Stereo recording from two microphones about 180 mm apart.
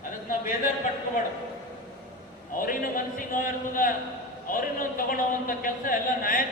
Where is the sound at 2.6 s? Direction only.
50° left (ahead or behind).